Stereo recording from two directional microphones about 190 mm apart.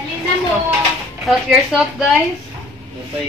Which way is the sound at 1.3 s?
Centre (ahead or behind).